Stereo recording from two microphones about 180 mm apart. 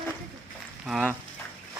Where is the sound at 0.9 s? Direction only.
Centre (ahead or behind).